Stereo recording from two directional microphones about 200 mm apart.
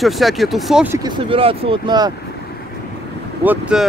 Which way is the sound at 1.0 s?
25° right (ahead or behind).